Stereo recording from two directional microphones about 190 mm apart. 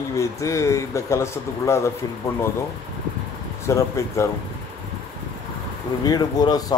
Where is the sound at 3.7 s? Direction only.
15° left (ahead or behind).